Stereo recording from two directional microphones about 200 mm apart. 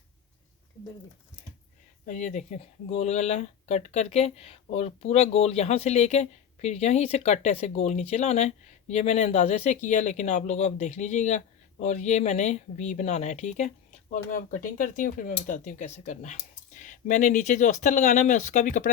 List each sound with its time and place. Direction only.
2.0 s speech: 35° left (ahead or behind)